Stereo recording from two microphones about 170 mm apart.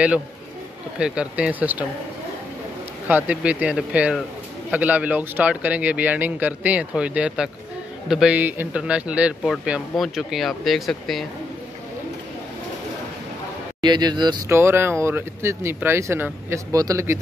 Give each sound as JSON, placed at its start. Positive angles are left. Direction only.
{"t": 0.9, "sound": "speech", "side_deg": -5}
{"t": 3.1, "sound": "speech", "side_deg": -10}
{"t": 13.7, "sound": "speech", "side_deg": -25}
{"t": 14.6, "sound": "speech", "side_deg": -15}